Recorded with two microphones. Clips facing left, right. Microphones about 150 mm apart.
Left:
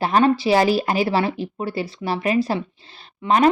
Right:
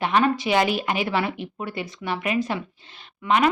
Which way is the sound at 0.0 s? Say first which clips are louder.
Left 4 dB; 35° left (ahead or behind).